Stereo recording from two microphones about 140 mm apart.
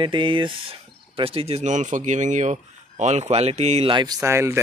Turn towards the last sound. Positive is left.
turn(degrees=-20)  # may be behind; listen again after turning